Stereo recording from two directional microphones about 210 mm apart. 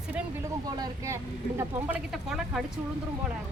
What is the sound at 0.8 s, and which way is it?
Speech, 15° right (ahead or behind).